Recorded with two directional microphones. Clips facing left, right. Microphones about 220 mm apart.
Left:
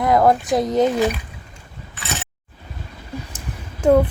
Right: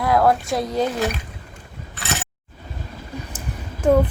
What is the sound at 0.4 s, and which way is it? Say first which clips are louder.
Speech: left 5 dB; 20° left (ahead or behind).